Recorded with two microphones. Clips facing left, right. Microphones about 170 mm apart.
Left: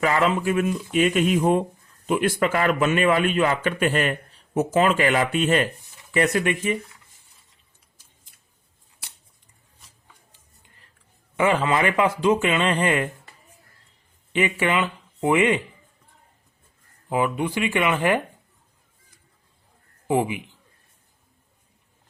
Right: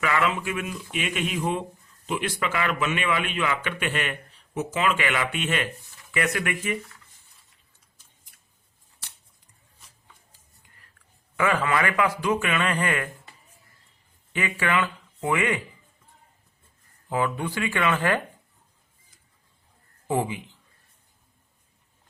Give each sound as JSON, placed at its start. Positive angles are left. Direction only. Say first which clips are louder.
{"t": 0.0, "sound": "a man's voice", "louder": "left 4 dB", "side_deg": 35}
{"t": 11.3, "sound": "speech", "louder": "left 3 dB", "side_deg": 20}
{"t": 14.3, "sound": "speech", "louder": "left 4 dB", "side_deg": 20}
{"t": 17.1, "sound": "speech", "louder": "left 3 dB", "side_deg": 20}
{"t": 20.1, "sound": "speech", "louder": "left 4 dB", "side_deg": 15}